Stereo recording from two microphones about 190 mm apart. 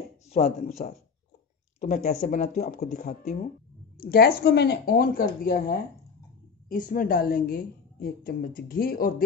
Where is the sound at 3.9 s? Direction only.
50° left (ahead or behind).